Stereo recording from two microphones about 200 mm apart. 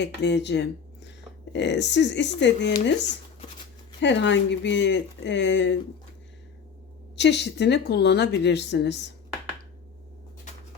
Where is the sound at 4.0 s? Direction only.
60° left (ahead or behind).